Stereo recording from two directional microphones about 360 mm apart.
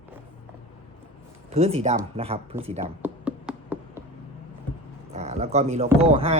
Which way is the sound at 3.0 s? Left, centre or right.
Centre.